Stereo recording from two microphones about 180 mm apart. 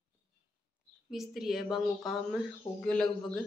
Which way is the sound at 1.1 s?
Centre (ahead or behind).